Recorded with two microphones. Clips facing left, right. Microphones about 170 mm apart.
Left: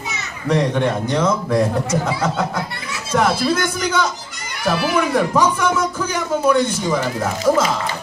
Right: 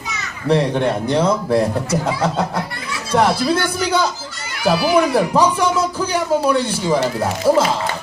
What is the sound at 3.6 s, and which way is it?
Speech, 35° right (ahead or behind).